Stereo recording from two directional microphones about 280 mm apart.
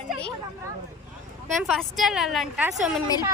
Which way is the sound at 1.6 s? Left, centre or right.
Centre.